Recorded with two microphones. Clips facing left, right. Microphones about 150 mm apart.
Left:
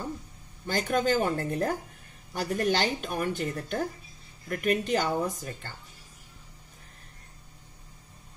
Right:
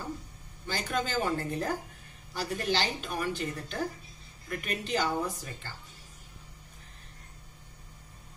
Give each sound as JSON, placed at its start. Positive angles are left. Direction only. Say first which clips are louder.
{"t": 0.7, "sound": "a woman's voice", "louder": "left 7 dB", "side_deg": 50}